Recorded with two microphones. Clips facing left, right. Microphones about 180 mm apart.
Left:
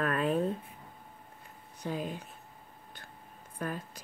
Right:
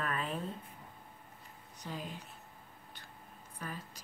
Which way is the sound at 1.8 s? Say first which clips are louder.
Left 8 dB; 55° left (ahead or behind).